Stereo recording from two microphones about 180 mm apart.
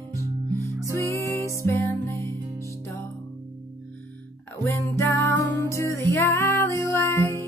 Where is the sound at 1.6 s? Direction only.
15° left (ahead or behind).